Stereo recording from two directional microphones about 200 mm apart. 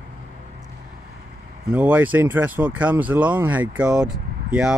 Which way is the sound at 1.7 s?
5° right (ahead or behind).